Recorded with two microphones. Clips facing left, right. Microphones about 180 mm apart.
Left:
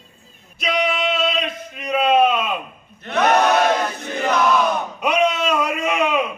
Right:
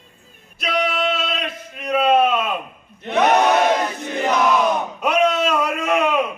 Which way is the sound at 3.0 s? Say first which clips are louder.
Right 1 dB; 20° right (ahead or behind).